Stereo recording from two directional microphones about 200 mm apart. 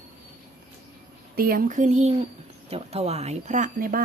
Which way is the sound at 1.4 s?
45° right (ahead or behind).